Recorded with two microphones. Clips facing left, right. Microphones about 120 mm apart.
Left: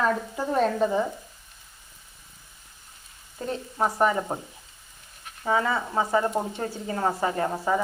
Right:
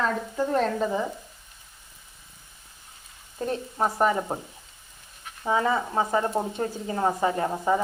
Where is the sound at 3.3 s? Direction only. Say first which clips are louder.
Right 2 dB; 15° right (ahead or behind).